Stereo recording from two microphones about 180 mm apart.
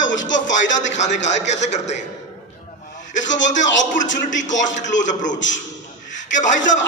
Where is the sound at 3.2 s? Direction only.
90° left.